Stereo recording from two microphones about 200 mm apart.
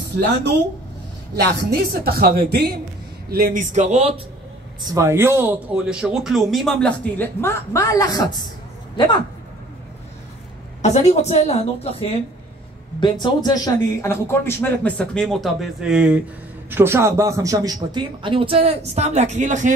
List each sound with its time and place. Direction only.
1.3 s speech: 55° right (ahead or behind); by 4.1 s 35° right (ahead or behind)
4.8 s speech: 15° right (ahead or behind); by 9.2 s 20° left (ahead or behind)
10.8 s a woman's voice: 35° left (ahead or behind)
13.0 s speech: 20° left (ahead or behind); by 19.7 s 35° right (ahead or behind)